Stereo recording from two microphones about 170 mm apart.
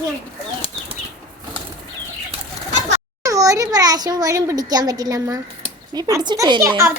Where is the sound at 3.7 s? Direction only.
20° right (ahead or behind).